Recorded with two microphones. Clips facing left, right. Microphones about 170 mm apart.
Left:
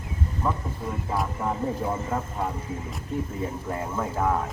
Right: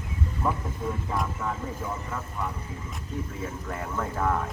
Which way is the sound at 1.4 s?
30° left (ahead or behind).